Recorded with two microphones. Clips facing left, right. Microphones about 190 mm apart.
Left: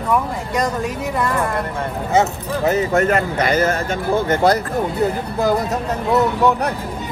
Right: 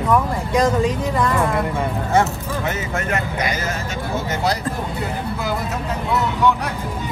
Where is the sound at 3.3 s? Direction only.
55° left (ahead or behind).